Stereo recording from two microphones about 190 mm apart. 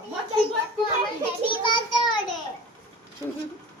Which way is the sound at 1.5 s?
25° left (ahead or behind).